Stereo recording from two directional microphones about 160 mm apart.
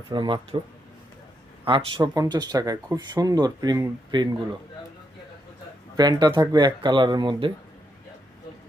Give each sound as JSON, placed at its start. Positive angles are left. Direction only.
{"t": 0.1, "sound": "speech", "side_deg": -30}
{"t": 1.6, "sound": "speech", "side_deg": -30}
{"t": 2.0, "sound": "speech", "side_deg": -20}
{"t": 6.0, "sound": "speech", "side_deg": -25}